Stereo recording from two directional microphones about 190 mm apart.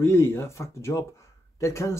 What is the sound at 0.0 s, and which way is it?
Speech, 15° left (ahead or behind).